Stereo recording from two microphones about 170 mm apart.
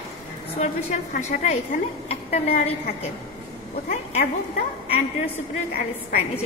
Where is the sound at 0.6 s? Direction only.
40° left (ahead or behind).